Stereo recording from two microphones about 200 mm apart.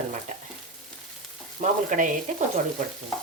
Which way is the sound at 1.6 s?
40° right (ahead or behind).